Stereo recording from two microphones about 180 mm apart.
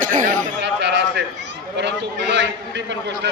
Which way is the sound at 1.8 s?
75° right (ahead or behind).